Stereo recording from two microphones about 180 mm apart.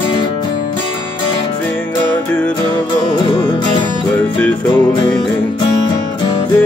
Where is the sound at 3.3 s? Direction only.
25° left (ahead or behind).